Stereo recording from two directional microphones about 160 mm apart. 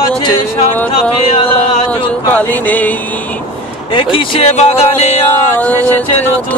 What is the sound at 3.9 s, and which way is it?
Speech, 35° left (ahead or behind).